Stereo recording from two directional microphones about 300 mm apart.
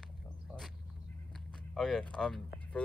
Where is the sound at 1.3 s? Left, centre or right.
Centre.